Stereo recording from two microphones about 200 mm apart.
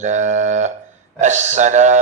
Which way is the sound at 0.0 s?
35° right (ahead or behind).